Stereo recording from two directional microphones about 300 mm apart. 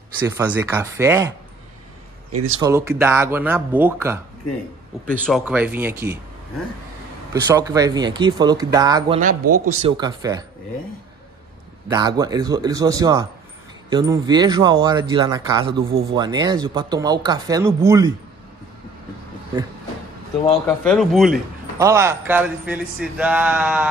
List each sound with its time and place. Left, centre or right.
0.4 s speech: centre
2.6 s speech: centre
5.0 s a man's voice: centre
7.4 s speech: centre
9.3 s a man's voice: right
9.7 s speech: centre
11.9 s speech: centre
20.6 s a man's voice: centre